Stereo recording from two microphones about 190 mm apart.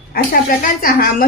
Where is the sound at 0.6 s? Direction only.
50° left (ahead or behind).